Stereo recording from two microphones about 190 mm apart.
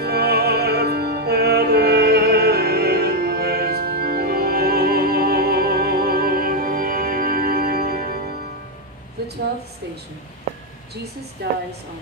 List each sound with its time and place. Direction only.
0.0 s music: 55° right (ahead or behind)
11.4 s a woman's voice: 60° right (ahead or behind)